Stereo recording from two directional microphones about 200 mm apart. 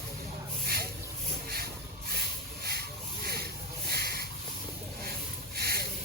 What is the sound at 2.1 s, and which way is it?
Rub, 50° right (ahead or behind).